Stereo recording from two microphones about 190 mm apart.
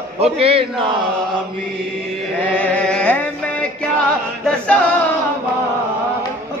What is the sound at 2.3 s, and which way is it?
Music, 5° left (ahead or behind).